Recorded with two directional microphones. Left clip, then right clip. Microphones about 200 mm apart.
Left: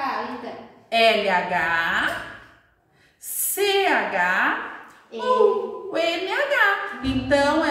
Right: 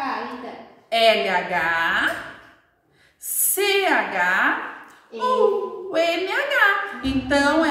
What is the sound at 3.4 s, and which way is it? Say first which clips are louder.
A woman's voice: right 1 dB; 15° right (ahead or behind).